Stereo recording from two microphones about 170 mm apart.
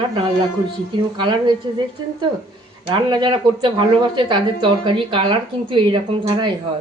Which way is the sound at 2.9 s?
25° right (ahead or behind).